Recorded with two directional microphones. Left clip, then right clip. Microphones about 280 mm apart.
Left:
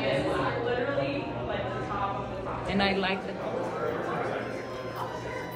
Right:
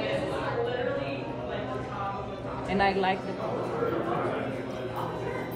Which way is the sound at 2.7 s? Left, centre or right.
Right.